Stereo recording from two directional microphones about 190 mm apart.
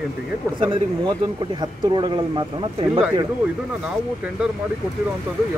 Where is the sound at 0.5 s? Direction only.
25° right (ahead or behind).